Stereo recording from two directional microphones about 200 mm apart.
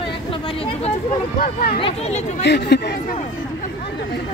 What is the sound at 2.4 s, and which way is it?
Speech, 60° left (ahead or behind).